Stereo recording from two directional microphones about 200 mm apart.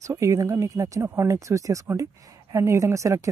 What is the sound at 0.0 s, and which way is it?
A woman's voice, 15° right (ahead or behind).